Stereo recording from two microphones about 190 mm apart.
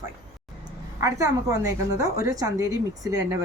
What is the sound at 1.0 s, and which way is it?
A woman's voice, 15° right (ahead or behind).